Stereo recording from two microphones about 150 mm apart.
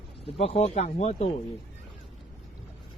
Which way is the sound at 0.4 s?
45° left (ahead or behind).